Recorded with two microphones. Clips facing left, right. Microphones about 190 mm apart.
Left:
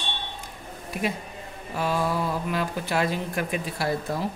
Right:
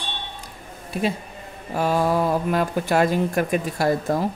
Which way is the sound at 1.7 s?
45° right (ahead or behind).